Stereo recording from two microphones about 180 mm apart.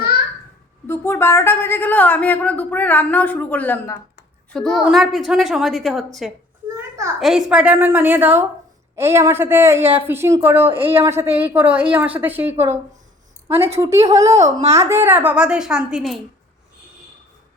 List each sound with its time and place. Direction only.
0.9 s a woman's voice: 15° left (ahead or behind)
6.7 s a sound: 15° right (ahead or behind)
7.2 s speech: centre (ahead or behind)